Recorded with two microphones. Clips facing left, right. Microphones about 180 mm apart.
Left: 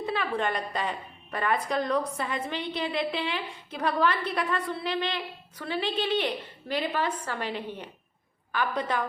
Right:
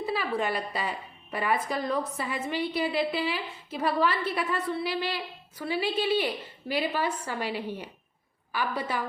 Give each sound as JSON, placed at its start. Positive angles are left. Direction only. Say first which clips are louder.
{"t": 0.0, "sound": "a woman's voice", "louder": "even", "side_deg": -5}